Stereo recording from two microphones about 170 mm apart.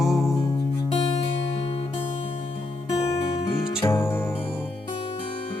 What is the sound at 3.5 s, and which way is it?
Music, 35° left (ahead or behind).